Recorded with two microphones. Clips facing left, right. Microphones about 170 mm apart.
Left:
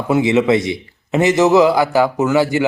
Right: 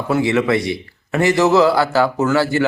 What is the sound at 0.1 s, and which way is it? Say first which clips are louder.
A man's voice: left 3 dB; 20° left (ahead or behind).